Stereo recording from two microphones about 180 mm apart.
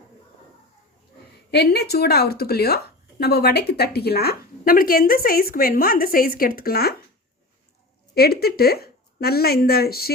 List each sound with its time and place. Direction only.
1.5 s speech: 65° left (ahead or behind)
8.1 s speech: 60° left (ahead or behind)